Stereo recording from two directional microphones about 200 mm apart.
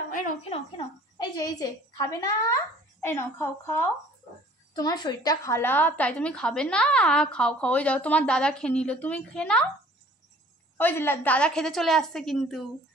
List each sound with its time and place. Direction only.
0.1 s a woman's voice: 35° left (ahead or behind)
1.1 s a woman's voice: 20° left (ahead or behind); by 9.7 s 5° left (ahead or behind)
10.8 s a woman's voice: 10° left (ahead or behind)